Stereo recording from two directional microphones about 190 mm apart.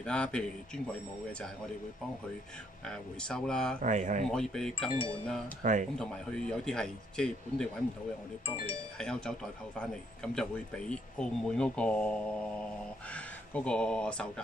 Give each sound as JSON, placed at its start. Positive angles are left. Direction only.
{"t": 0.0, "sound": "a man's voice", "side_deg": 5}
{"t": 2.9, "sound": "a man's voice", "side_deg": 5}
{"t": 3.8, "sound": "speech", "side_deg": -40}
{"t": 4.3, "sound": "a man's voice", "side_deg": 5}
{"t": 5.6, "sound": "speech", "side_deg": -40}
{"t": 5.9, "sound": "a man's voice", "side_deg": 5}
{"t": 8.9, "sound": "a man's voice", "side_deg": 5}